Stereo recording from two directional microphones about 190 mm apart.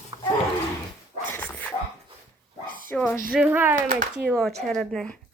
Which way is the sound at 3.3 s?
10° right (ahead or behind).